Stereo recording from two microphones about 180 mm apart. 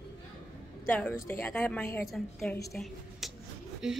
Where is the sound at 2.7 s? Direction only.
Centre (ahead or behind).